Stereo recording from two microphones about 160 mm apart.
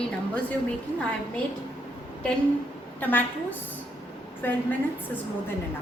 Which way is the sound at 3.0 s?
10° left (ahead or behind).